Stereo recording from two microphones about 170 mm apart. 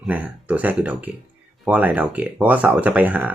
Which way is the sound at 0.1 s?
10° right (ahead or behind).